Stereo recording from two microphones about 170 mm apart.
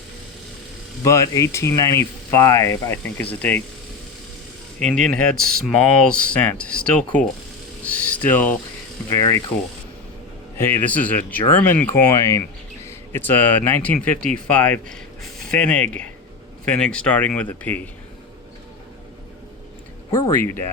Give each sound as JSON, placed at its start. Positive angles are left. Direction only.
{"t": 1.0, "sound": "speech", "side_deg": 20}
{"t": 4.8, "sound": "speech", "side_deg": 5}
{"t": 7.9, "sound": "a sound", "side_deg": 10}
{"t": 9.0, "sound": "speech", "side_deg": 15}
{"t": 10.6, "sound": "speech", "side_deg": 10}
{"t": 20.1, "sound": "speech", "side_deg": 15}